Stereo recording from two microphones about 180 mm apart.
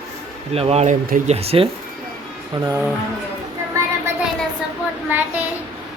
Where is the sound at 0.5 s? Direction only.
35° right (ahead or behind).